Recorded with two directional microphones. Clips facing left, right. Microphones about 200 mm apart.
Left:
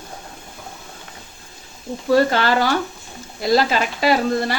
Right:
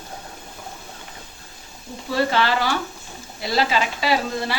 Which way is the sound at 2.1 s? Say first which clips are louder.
Left 5 dB; 45° left (ahead or behind).